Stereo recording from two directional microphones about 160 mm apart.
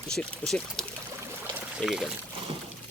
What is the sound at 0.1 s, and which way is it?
Speech, 5° left (ahead or behind).